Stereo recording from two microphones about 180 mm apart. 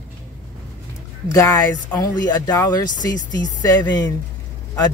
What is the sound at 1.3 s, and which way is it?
Speech, 20° left (ahead or behind).